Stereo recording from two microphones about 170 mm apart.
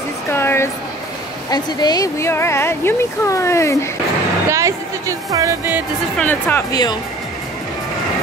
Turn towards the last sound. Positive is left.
turn(degrees=25)  # may be behind; listen again after turning